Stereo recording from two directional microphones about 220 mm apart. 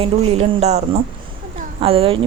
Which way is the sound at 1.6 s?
25° right (ahead or behind).